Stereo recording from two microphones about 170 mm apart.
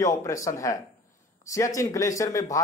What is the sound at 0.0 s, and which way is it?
A man's voice, 20° left (ahead or behind).